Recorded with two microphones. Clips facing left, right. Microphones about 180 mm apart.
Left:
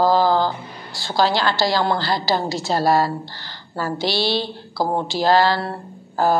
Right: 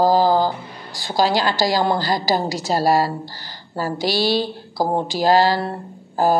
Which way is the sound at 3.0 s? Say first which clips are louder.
Even; 40° right (ahead or behind).